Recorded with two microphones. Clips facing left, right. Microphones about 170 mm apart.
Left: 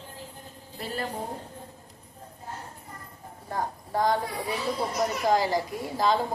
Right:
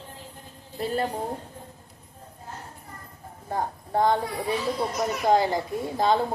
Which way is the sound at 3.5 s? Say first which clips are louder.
Right 2 dB; 25° right (ahead or behind).